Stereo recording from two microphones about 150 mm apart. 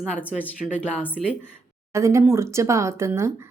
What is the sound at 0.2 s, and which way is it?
A woman's voice, 10° left (ahead or behind).